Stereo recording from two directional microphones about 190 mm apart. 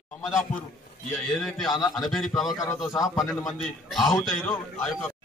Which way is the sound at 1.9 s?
Centre (ahead or behind).